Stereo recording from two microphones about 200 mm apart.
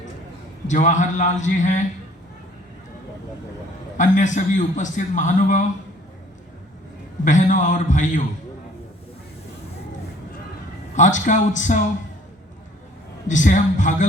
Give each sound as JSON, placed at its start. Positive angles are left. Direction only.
{"t": 0.7, "sound": "a man's voice", "side_deg": 35}
{"t": 3.9, "sound": "a man's voice", "side_deg": 40}
{"t": 7.3, "sound": "a man's voice", "side_deg": 40}
{"t": 10.9, "sound": "a man's voice", "side_deg": 40}
{"t": 13.2, "sound": "a man's voice", "side_deg": 40}